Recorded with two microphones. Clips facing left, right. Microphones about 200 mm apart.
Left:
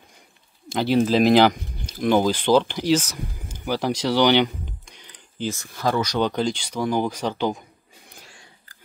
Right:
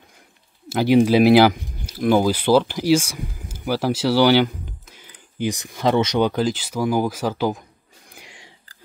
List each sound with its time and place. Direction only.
0.7 s speech: 10° right (ahead or behind)
5.5 s speech: 20° right (ahead or behind)
6.2 s speech: 5° right (ahead or behind)
8.1 s sniff: 15° right (ahead or behind)